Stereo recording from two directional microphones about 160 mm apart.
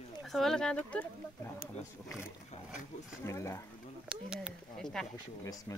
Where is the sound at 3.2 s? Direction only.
15° left (ahead or behind).